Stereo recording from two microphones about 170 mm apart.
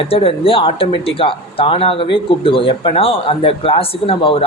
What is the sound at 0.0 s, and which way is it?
Speech, 35° left (ahead or behind).